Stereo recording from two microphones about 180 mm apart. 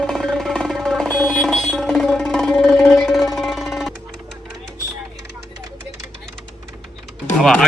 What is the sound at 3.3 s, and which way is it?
Music, centre (ahead or behind).